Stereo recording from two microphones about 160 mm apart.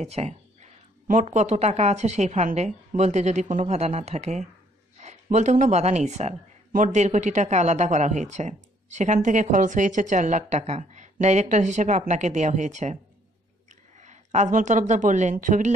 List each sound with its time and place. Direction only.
0.0 s a woman's voice: 45° right (ahead or behind)